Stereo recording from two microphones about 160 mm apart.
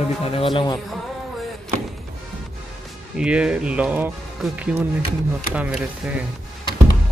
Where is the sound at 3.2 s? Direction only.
5° right (ahead or behind).